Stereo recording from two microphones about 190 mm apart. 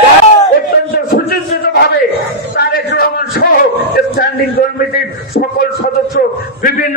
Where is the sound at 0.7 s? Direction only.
55° left (ahead or behind).